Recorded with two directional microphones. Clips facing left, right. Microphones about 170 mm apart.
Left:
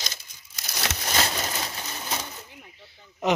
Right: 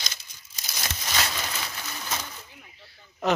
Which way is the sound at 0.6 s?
70° left (ahead or behind).